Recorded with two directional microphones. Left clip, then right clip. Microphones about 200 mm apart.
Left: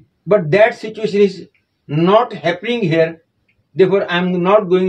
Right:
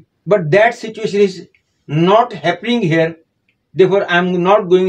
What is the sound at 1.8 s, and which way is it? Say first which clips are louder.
Speech: right 1 dB; 30° right (ahead or behind).